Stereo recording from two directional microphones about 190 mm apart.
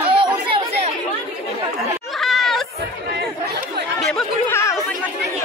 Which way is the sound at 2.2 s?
Centre (ahead or behind).